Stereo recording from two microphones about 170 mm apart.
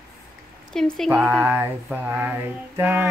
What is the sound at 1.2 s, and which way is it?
Mantra, 5° right (ahead or behind).